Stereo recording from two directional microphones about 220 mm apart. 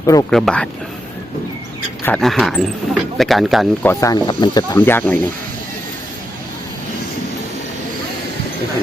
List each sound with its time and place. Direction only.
0.0 s speech: 15° left (ahead or behind)
0.3 s speech: 5° left (ahead or behind)
2.0 s speech: 5° left (ahead or behind)
4.0 s speech: 20° left (ahead or behind)